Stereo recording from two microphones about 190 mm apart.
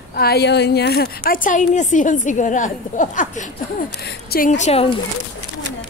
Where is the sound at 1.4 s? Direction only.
40° left (ahead or behind).